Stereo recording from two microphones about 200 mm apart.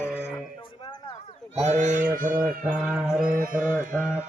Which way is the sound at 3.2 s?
45° right (ahead or behind).